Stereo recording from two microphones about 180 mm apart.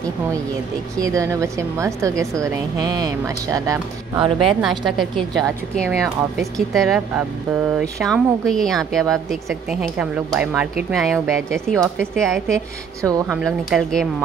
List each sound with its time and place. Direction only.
0.9 s a woman's voice: 20° right (ahead or behind)
4.5 s speech: centre (ahead or behind)
13.0 s a woman's voice: 15° right (ahead or behind)
13.4 s speech: centre (ahead or behind)